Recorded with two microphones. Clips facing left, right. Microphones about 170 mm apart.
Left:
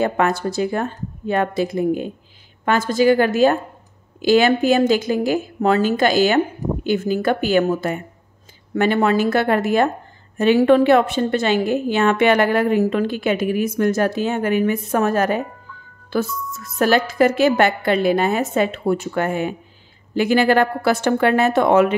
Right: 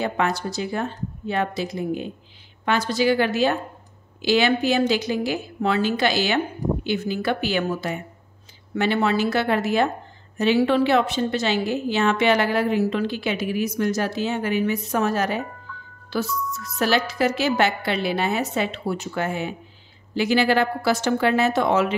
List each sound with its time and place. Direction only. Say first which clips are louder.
0.0 s a woman's voice: left 5 dB; 50° left (ahead or behind)